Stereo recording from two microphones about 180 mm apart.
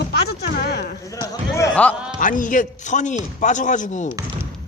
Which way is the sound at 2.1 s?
45° left (ahead or behind).